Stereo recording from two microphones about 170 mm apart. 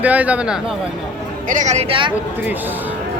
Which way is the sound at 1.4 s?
45° right (ahead or behind).